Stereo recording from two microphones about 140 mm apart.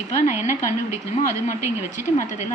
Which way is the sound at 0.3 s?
20° right (ahead or behind).